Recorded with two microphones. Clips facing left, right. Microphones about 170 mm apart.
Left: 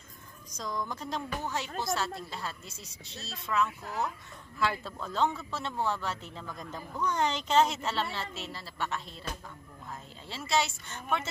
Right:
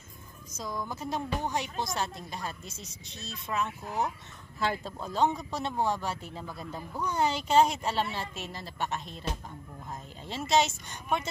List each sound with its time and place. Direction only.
0.6 s a woman's voice: 10° right (ahead or behind)